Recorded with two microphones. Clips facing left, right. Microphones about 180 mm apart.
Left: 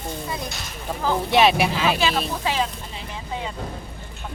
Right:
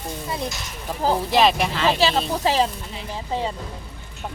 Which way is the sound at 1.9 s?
35° right (ahead or behind).